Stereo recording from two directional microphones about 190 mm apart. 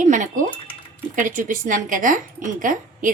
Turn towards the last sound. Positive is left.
turn(degrees=-45)  # may be behind; listen again after turning